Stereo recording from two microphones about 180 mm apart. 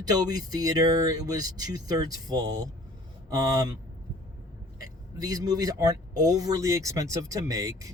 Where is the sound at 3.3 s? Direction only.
20° right (ahead or behind).